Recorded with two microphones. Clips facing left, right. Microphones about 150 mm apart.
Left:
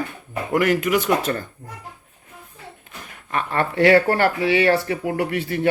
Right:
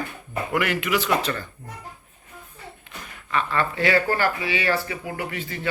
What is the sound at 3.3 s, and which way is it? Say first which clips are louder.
Speech: left 1 dB; 50° left (ahead or behind).